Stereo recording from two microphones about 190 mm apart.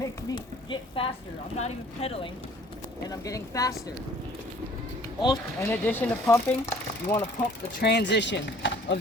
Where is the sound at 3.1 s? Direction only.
15° left (ahead or behind).